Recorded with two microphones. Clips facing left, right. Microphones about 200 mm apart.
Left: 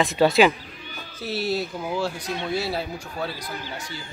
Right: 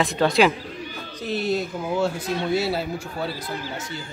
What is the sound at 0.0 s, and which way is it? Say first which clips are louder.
Speech: left 1 dB; centre (ahead or behind).